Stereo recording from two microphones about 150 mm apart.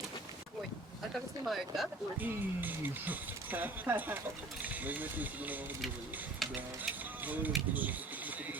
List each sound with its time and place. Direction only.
1.5 s speech: centre (ahead or behind)
2.1 s speech: 10° right (ahead or behind)
6.4 s a sound: centre (ahead or behind)
7.2 s speech: 10° right (ahead or behind)